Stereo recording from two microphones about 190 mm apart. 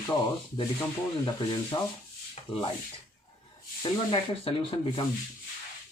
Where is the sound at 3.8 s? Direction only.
25° left (ahead or behind).